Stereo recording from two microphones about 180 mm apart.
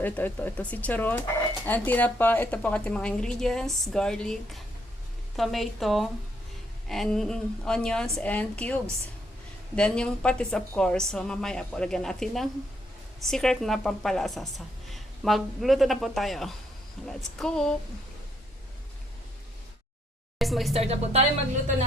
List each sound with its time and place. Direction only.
0.0 s a woman's voice: 10° left (ahead or behind)
20.4 s a woman's voice: centre (ahead or behind)
20.7 s speech: 35° right (ahead or behind)